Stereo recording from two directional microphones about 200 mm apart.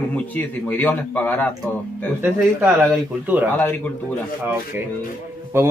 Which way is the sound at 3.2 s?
10° right (ahead or behind).